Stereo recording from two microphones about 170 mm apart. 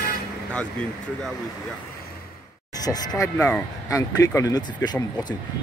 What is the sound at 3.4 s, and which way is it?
Speech, 10° left (ahead or behind).